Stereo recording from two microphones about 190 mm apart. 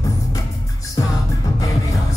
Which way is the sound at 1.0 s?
20° left (ahead or behind).